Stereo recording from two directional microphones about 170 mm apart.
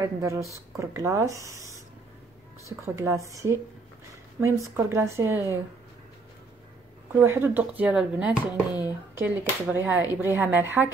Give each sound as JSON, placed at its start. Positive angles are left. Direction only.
{"t": 0.0, "sound": "speech", "side_deg": -15}
{"t": 4.6, "sound": "speech", "side_deg": -15}
{"t": 7.2, "sound": "speech", "side_deg": -15}